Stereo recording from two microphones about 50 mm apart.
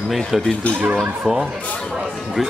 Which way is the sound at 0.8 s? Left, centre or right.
Right.